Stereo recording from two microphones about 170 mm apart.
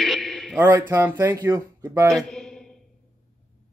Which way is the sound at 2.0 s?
5° left (ahead or behind).